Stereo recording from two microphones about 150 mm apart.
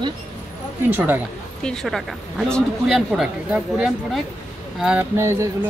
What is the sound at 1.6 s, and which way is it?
Speech, 5° left (ahead or behind).